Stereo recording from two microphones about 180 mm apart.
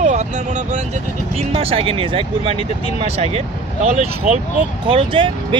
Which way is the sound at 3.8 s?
35° right (ahead or behind).